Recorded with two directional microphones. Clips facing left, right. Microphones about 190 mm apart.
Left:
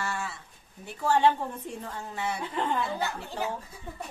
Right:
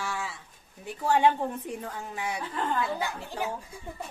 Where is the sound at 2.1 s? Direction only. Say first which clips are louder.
Left 2 dB; 15° right (ahead or behind).